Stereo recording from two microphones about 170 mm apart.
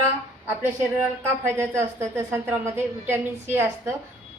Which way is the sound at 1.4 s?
15° right (ahead or behind).